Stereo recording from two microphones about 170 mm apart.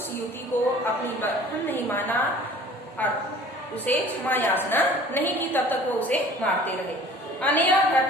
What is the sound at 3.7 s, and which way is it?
A woman's voice, 10° left (ahead or behind).